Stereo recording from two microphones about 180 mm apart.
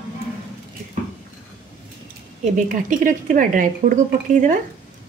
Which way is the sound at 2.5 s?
45° right (ahead or behind).